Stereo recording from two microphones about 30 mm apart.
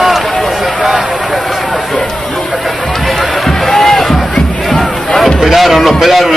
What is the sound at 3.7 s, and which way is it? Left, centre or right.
Music, centre.